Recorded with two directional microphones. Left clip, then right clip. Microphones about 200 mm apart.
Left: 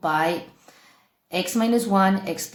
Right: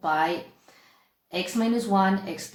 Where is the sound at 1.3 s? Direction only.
35° left (ahead or behind).